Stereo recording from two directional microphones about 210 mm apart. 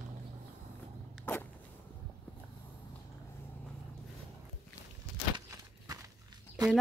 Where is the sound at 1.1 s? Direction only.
10° left (ahead or behind).